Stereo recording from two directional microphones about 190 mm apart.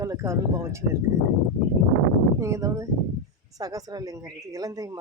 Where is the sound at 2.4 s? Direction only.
15° right (ahead or behind).